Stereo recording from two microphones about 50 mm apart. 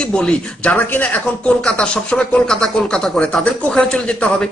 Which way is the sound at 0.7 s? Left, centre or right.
Left.